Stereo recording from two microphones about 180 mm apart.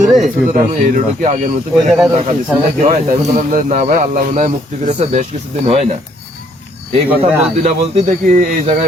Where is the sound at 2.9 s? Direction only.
40° right (ahead or behind).